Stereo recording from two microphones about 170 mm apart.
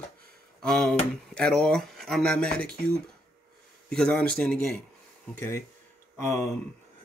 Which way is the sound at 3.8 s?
5° left (ahead or behind).